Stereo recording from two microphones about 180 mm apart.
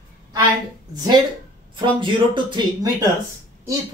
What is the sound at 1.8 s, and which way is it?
Speech, 25° right (ahead or behind).